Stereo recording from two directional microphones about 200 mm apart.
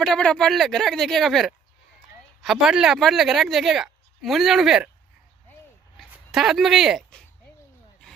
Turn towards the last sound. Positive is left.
turn(degrees=0)  # may be behind; listen again after turning